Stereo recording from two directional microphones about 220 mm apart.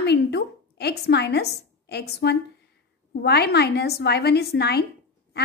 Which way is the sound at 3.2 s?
45° left (ahead or behind).